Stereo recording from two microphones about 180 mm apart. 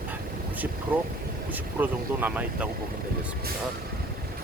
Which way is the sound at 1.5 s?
10° right (ahead or behind).